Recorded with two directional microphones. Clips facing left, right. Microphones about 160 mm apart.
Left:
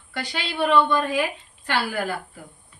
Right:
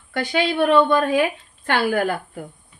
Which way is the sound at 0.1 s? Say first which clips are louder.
Right 9 dB; 50° right (ahead or behind).